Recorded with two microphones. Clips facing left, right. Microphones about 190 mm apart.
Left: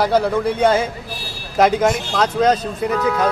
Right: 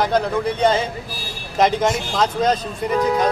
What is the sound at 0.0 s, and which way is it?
A man's voice, 10° left (ahead or behind).